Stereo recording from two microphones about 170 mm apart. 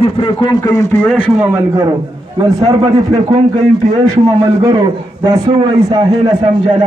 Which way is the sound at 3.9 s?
20° right (ahead or behind).